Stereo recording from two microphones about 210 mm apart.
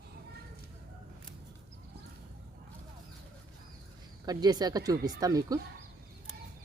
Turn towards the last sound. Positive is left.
turn(degrees=-15)  # may be behind; listen again after turning